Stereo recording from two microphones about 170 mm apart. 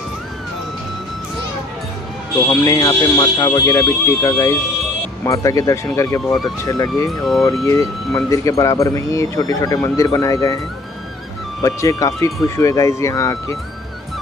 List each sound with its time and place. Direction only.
2.4 s speech: 15° left (ahead or behind)
7.1 s speech: centre (ahead or behind)
7.6 s speech: 20° left (ahead or behind)
11.6 s speech: 20° left (ahead or behind)